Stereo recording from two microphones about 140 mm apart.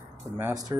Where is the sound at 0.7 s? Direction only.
25° right (ahead or behind).